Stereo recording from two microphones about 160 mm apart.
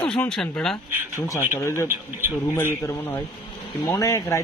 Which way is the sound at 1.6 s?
20° left (ahead or behind).